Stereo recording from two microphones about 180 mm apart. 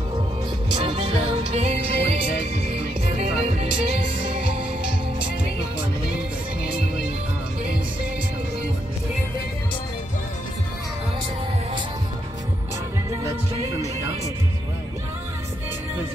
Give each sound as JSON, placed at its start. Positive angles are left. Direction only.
{"t": 0.7, "sound": "music", "side_deg": -25}